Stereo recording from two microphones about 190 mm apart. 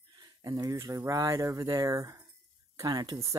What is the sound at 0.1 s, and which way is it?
Speech, 20° right (ahead or behind).